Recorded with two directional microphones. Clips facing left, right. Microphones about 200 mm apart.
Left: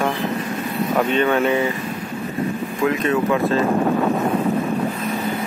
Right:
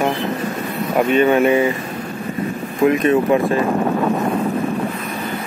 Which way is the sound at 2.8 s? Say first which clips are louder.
Right 6 dB; 25° right (ahead or behind).